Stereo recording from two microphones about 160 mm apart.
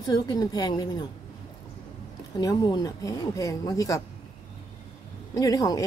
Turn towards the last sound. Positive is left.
turn(degrees=20)  # may be behind; listen again after turning